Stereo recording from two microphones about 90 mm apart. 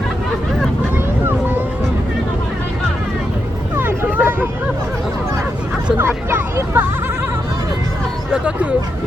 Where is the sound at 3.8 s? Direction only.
20° right (ahead or behind).